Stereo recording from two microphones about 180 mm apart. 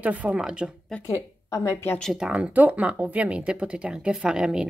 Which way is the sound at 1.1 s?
20° left (ahead or behind).